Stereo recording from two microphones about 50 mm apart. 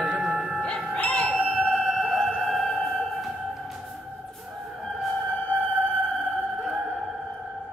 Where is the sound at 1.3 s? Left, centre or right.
Right.